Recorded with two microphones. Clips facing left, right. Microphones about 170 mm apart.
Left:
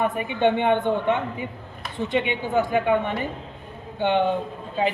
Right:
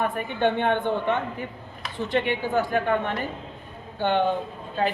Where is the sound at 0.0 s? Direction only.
15° left (ahead or behind).